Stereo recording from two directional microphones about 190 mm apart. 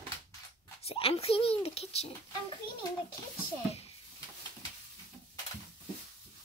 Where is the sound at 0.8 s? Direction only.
30° left (ahead or behind).